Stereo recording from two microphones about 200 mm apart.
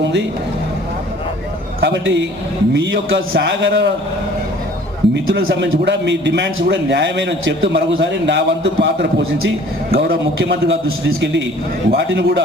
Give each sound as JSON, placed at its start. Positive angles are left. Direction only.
{"t": 1.8, "sound": "a man's voice", "side_deg": -60}
{"t": 5.1, "sound": "a man's voice", "side_deg": -55}